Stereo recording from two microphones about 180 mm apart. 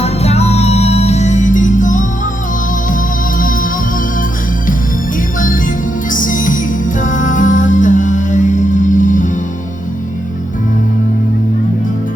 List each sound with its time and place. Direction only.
0.0 s music: 35° left (ahead or behind)
3.3 s music: 50° left (ahead or behind)
6.1 s music: 45° left (ahead or behind)